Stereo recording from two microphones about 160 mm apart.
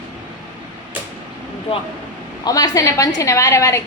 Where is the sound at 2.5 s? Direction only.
20° left (ahead or behind).